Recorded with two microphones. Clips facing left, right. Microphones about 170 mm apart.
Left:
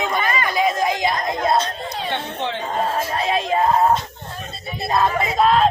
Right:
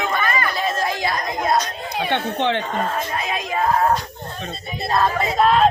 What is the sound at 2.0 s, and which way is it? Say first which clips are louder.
Speech: right 6 dB; 65° right (ahead or behind).